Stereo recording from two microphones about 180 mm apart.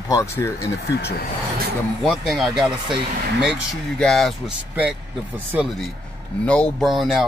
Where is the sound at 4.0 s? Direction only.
5° left (ahead or behind).